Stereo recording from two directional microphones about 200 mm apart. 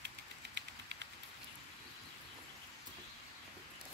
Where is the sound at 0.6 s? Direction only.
60° right (ahead or behind).